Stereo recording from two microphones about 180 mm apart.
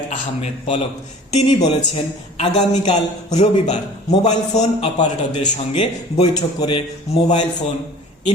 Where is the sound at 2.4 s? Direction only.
40° left (ahead or behind).